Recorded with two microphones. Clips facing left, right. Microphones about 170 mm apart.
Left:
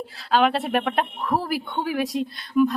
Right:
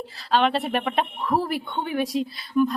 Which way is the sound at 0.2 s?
Centre (ahead or behind).